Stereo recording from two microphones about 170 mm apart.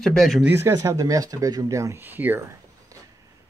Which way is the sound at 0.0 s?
Centre (ahead or behind).